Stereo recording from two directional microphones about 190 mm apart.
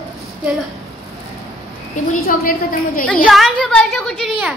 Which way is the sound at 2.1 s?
50° left (ahead or behind).